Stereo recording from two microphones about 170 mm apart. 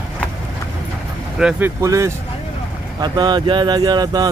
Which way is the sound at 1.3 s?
10° right (ahead or behind).